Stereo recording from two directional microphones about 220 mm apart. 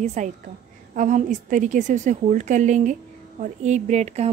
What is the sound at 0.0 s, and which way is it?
A woman's voice, 30° right (ahead or behind).